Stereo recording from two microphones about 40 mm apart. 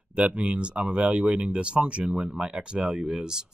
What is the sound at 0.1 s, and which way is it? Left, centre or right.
Speech, right.